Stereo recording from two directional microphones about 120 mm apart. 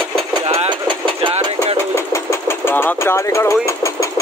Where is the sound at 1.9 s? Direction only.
25° left (ahead or behind).